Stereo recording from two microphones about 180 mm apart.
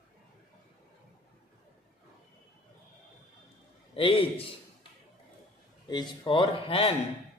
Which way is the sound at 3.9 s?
30° left (ahead or behind).